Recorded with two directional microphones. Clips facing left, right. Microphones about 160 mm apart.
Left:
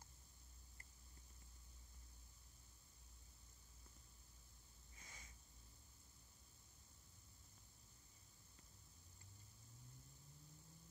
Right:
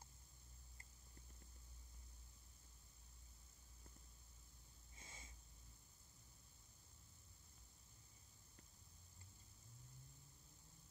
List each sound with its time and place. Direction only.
4.9 s snort: 25° right (ahead or behind)